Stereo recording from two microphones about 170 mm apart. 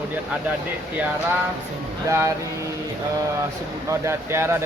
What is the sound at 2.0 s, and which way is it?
Speech, 20° right (ahead or behind).